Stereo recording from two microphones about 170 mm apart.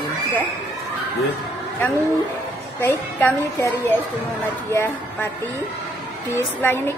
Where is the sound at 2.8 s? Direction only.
15° left (ahead or behind).